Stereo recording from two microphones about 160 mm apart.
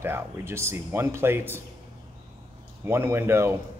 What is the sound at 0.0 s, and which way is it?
Speech, 15° right (ahead or behind).